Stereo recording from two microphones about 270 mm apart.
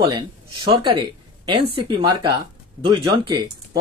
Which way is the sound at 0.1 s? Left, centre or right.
Centre.